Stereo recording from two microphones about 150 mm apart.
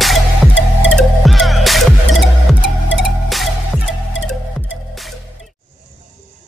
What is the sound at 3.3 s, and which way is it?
Music, centre (ahead or behind).